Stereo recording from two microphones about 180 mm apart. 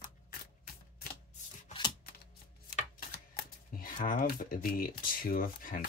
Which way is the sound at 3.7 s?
50° left (ahead or behind).